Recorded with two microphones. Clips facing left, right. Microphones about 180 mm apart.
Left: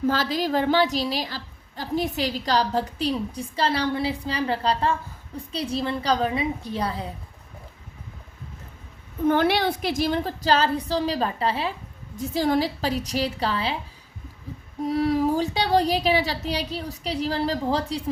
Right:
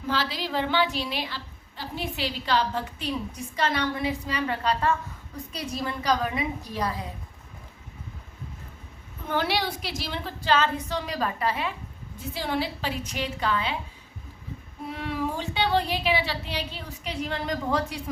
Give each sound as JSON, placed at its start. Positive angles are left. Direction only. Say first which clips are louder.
{"t": 0.1, "sound": "a woman's voice", "louder": "left 5 dB", "side_deg": 45}
{"t": 9.2, "sound": "a woman's voice", "louder": "left 7 dB", "side_deg": 50}
{"t": 12.3, "sound": "a woman's voice", "louder": "left 6 dB", "side_deg": 40}
{"t": 14.8, "sound": "a woman's voice", "louder": "left 9 dB", "side_deg": 35}